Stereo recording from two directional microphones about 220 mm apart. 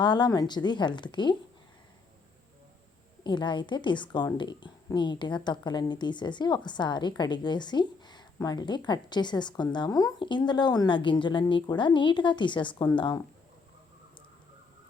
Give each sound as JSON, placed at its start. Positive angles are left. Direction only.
{"t": 0.0, "sound": "a woman's voice", "side_deg": 20}
{"t": 3.2, "sound": "a woman's voice", "side_deg": 20}